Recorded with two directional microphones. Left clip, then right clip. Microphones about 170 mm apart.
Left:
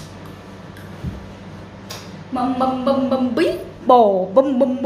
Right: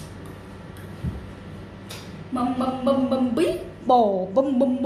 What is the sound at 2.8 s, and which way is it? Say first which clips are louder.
A man's voice: left 4 dB; 5° left (ahead or behind).